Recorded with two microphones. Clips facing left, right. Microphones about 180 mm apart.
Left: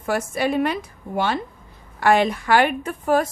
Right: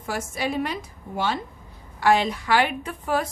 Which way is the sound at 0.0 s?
60° left (ahead or behind).